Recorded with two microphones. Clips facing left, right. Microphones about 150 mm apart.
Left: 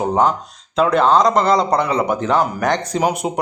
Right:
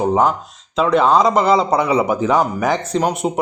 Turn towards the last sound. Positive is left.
turn(degrees=10)  # may be behind; listen again after turning